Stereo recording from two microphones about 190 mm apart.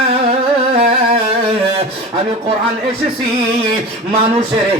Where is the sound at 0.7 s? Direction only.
30° right (ahead or behind).